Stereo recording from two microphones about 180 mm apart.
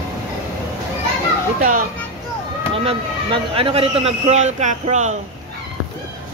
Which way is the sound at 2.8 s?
30° right (ahead or behind).